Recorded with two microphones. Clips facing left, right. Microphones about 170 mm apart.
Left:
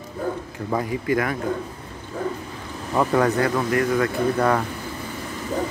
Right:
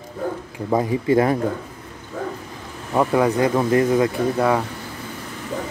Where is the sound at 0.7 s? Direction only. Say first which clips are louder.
Right 5 dB; 25° right (ahead or behind).